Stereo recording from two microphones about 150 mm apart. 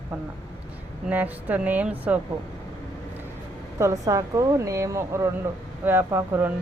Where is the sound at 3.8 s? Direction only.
20° right (ahead or behind).